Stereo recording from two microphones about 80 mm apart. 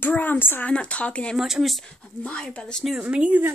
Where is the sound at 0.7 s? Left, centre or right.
Centre.